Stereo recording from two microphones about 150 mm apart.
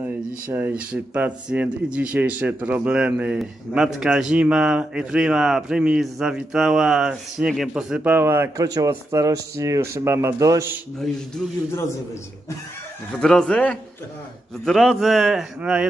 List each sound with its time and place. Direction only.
0.0 s speech: 15° right (ahead or behind)
11.0 s a man's voice: 5° left (ahead or behind)
13.1 s a man's voice: 5° left (ahead or behind)